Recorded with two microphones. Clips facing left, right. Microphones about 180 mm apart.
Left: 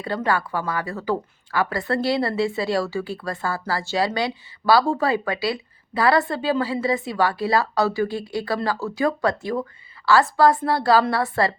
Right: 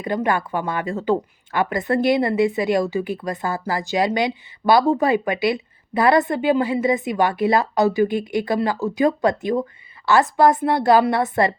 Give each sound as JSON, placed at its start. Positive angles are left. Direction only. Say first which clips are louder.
{"t": 0.0, "sound": "speech", "louder": "right 2 dB", "side_deg": -20}